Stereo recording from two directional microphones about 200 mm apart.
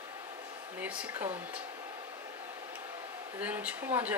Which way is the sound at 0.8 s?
5° right (ahead or behind).